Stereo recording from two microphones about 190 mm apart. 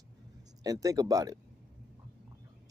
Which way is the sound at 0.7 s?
20° right (ahead or behind).